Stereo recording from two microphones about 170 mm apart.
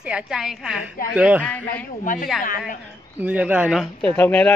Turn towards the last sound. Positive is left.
turn(degrees=10)  # may be behind; listen again after turning